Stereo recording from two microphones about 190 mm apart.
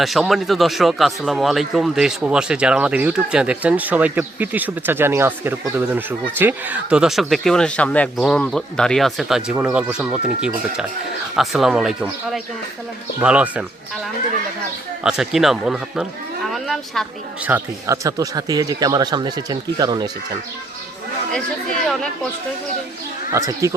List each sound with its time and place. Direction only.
0.0 s speech: centre (ahead or behind)
15.0 s speech: 5° right (ahead or behind)
17.5 s speech: 15° right (ahead or behind)
21.8 s speech: 5° left (ahead or behind)
23.3 s speech: 15° right (ahead or behind)